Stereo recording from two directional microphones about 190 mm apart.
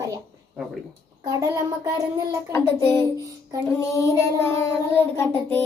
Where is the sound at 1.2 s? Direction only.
20° right (ahead or behind).